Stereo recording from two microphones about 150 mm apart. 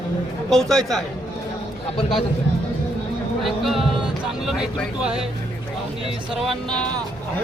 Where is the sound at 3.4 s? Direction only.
Centre (ahead or behind).